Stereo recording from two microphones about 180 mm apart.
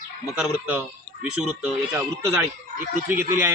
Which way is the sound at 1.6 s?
15° right (ahead or behind).